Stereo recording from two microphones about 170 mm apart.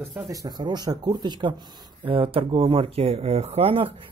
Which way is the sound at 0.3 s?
20° right (ahead or behind).